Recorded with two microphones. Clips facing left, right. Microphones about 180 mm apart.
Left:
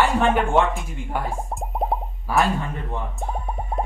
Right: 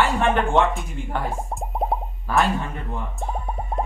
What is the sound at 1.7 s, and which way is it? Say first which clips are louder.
Plop: even; centre (ahead or behind).